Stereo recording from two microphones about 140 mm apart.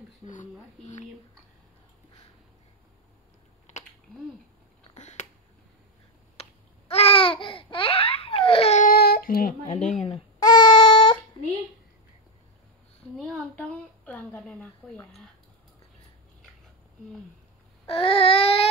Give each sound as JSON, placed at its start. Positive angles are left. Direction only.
{"t": 0.2, "sound": "speech", "side_deg": 65}
{"t": 4.9, "sound": "finger snapping", "side_deg": 55}
{"t": 6.4, "sound": "babbling", "side_deg": 45}
{"t": 8.8, "sound": "child singing", "side_deg": 90}
{"t": 9.8, "sound": "speech", "side_deg": 55}
{"t": 10.4, "sound": "a sound", "side_deg": 30}
{"t": 13.2, "sound": "a sound", "side_deg": 10}
{"t": 17.8, "sound": "baby cry", "side_deg": 45}